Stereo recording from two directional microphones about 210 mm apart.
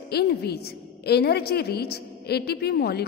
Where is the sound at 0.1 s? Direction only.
50° left (ahead or behind).